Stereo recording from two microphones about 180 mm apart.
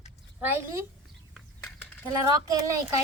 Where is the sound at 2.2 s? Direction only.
20° right (ahead or behind).